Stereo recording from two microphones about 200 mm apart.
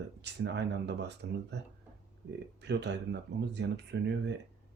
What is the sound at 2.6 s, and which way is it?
Speech, 60° right (ahead or behind).